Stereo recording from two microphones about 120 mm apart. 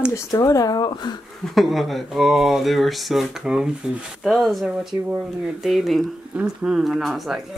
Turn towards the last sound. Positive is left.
turn(degrees=0)  # may be behind; listen again after turning